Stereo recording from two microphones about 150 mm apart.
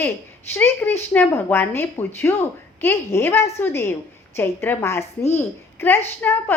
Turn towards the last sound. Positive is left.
turn(degrees=10)  # may be behind; listen again after turning